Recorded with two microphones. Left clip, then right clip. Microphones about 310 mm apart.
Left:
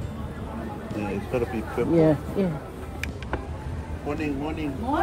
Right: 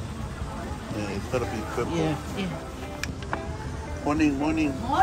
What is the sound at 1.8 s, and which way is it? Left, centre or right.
Speech, right.